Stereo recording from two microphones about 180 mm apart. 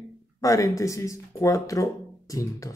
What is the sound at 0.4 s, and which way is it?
Speech, 20° left (ahead or behind).